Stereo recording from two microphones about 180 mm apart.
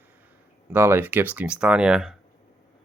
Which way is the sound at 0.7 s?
10° right (ahead or behind).